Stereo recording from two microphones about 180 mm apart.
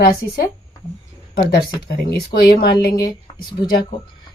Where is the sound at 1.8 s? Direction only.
60° left (ahead or behind).